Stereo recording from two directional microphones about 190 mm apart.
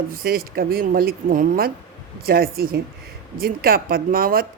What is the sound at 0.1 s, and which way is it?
Speech, 50° right (ahead or behind).